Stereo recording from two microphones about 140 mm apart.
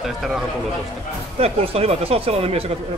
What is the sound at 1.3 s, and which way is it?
Speech, 45° right (ahead or behind).